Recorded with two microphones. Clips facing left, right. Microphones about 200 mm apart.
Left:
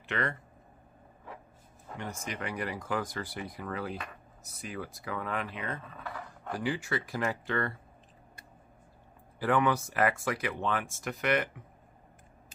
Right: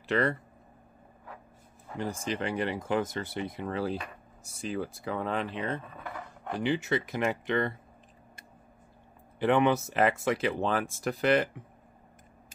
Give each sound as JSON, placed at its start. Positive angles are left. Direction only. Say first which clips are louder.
{"t": 0.1, "sound": "speech", "louder": "right 6 dB", "side_deg": -35}
{"t": 2.0, "sound": "speech", "louder": "right 6 dB", "side_deg": -30}
{"t": 9.4, "sound": "speech", "louder": "right 3 dB", "side_deg": -25}